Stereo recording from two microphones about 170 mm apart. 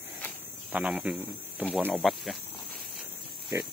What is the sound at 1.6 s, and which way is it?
Speech, 10° left (ahead or behind).